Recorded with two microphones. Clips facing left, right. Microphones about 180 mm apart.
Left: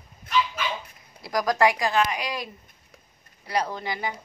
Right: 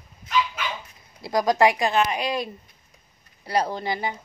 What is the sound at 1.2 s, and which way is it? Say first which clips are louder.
Speech: right 3 dB; 25° right (ahead or behind).